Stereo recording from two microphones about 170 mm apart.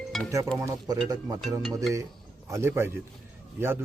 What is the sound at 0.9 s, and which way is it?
Speech, 20° right (ahead or behind).